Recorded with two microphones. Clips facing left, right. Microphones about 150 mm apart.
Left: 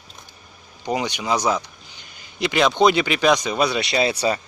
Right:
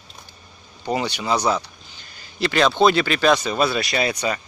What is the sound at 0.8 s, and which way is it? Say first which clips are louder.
Speech: even; 15° left (ahead or behind).